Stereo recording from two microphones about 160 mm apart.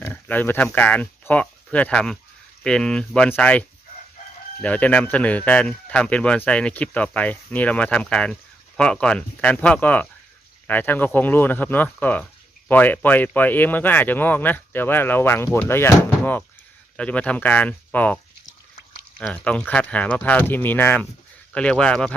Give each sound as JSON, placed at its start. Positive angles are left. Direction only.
{"t": 0.0, "sound": "speech", "side_deg": 10}
{"t": 19.2, "sound": "speech", "side_deg": 5}